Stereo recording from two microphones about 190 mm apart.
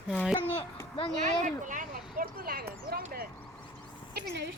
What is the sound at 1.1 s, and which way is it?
Speech, 40° right (ahead or behind).